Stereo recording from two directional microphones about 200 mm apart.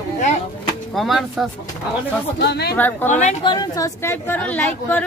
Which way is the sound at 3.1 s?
35° left (ahead or behind).